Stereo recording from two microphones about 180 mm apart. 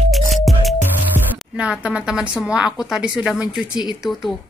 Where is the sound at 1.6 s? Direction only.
5° right (ahead or behind).